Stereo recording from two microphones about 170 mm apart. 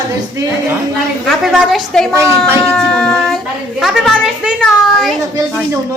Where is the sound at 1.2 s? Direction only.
Centre (ahead or behind).